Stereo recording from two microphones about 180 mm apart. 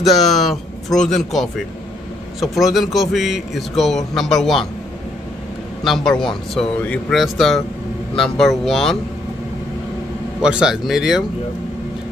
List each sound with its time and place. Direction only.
0.0 s speech: centre (ahead or behind)
5.9 s speech: centre (ahead or behind)
10.4 s speech: 5° right (ahead or behind)